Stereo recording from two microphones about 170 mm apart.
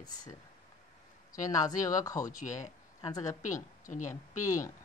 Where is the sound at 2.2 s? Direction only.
50° left (ahead or behind).